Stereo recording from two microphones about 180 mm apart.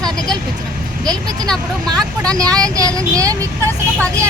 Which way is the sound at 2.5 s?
20° right (ahead or behind).